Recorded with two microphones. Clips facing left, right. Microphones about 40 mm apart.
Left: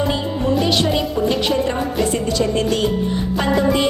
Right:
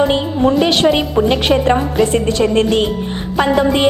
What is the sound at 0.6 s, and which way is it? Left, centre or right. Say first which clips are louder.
Speech: right 5 dB; right.